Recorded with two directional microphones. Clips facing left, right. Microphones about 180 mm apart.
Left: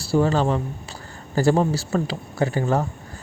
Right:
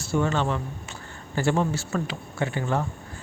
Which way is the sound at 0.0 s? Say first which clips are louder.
Left 5 dB; 35° left (ahead or behind).